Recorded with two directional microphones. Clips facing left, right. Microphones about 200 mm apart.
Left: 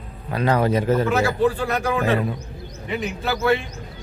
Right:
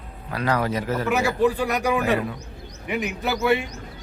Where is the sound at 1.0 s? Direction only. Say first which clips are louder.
Left 1 dB; 15° right (ahead or behind).